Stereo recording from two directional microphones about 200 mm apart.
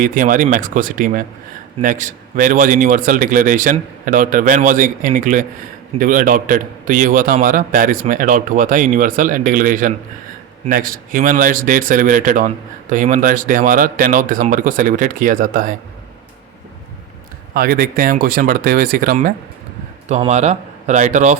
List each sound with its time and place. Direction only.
0.0 s a man's voice: 40° right (ahead or behind)
17.5 s speech: 45° right (ahead or behind)
20.1 s a man's voice: 35° right (ahead or behind)